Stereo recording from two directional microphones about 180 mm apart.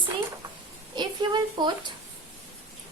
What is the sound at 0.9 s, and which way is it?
A woman's voice, 25° right (ahead or behind).